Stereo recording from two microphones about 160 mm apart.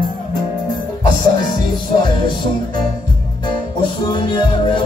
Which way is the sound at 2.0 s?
30° left (ahead or behind).